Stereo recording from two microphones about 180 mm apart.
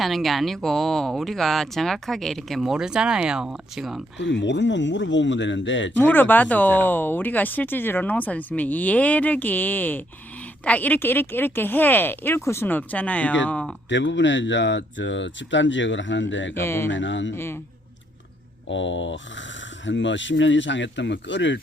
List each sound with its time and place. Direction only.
0.0 s speech: centre (ahead or behind)
4.2 s speech: 80° left
6.0 s speech: 10° left (ahead or behind)
13.9 s speech: 90° left
16.6 s speech: 15° left (ahead or behind)
16.9 s speech: 90° left
17.3 s speech: 15° left (ahead or behind)
18.7 s speech: 90° left